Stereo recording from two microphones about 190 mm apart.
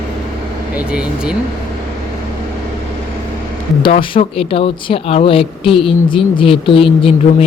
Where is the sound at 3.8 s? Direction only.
30° left (ahead or behind).